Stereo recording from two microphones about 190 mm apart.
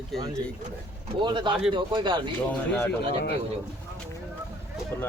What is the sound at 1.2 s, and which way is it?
Speech, 25° right (ahead or behind).